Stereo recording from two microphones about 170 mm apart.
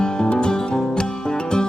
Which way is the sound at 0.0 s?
5° left (ahead or behind).